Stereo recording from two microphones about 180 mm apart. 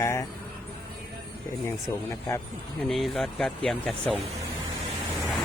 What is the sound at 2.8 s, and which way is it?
Speech, centre (ahead or behind).